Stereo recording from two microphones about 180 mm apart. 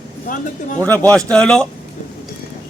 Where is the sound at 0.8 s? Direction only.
10° left (ahead or behind).